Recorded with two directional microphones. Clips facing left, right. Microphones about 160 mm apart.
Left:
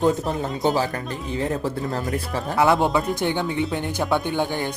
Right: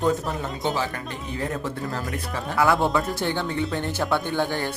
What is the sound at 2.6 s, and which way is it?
A man's voice, 20° left (ahead or behind).